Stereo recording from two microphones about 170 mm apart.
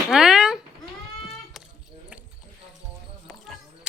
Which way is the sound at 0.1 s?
Centre (ahead or behind).